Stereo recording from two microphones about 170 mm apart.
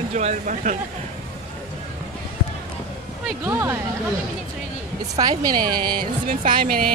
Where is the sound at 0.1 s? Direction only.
45° right (ahead or behind).